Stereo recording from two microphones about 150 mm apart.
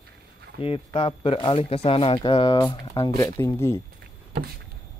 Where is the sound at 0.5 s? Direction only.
40° left (ahead or behind).